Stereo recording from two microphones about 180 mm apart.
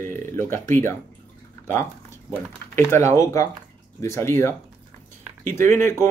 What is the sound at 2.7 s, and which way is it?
Speech, 15° left (ahead or behind).